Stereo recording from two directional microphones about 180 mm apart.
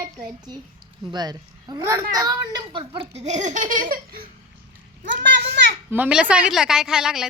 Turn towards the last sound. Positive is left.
turn(degrees=-5)  # may be behind; listen again after turning